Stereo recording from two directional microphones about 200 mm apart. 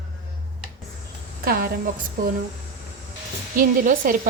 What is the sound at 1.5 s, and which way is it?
Speech, 45° right (ahead or behind).